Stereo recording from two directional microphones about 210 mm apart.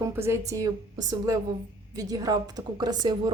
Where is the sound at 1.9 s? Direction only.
15° right (ahead or behind).